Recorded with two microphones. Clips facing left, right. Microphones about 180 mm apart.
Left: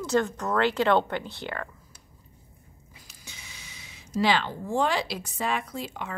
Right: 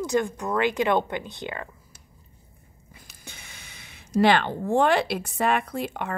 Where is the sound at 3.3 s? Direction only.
55° right (ahead or behind).